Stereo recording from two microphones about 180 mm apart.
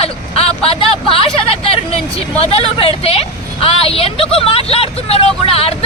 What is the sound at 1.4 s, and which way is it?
Hubbub, 30° left (ahead or behind).